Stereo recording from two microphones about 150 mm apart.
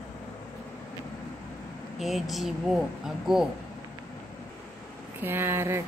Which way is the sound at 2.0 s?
Centre (ahead or behind).